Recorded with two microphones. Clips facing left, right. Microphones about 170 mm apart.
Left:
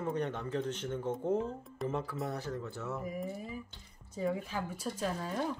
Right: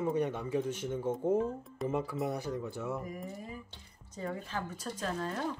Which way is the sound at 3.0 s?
5° left (ahead or behind).